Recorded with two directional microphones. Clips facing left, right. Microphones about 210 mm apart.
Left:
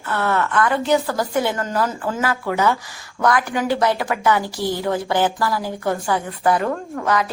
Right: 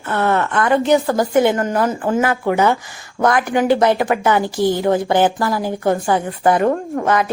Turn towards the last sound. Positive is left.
turn(degrees=-25)  # may be behind; listen again after turning